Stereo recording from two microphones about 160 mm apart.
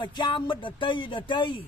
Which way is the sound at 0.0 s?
30° left (ahead or behind).